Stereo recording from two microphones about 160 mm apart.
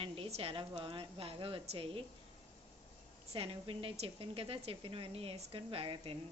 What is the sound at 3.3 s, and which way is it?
Speech, 35° right (ahead or behind).